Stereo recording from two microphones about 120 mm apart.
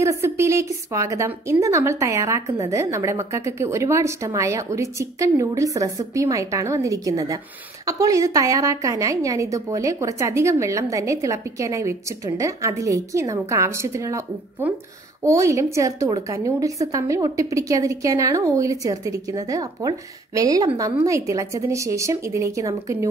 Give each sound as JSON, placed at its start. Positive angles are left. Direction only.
{"t": 0.0, "sound": "a woman's voice", "side_deg": -25}
{"t": 15.2, "sound": "a woman's voice", "side_deg": -25}